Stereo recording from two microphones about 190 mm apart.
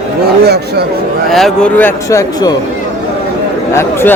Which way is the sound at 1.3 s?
Centre (ahead or behind).